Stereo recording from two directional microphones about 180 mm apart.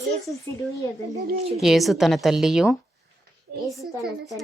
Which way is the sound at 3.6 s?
Centre (ahead or behind).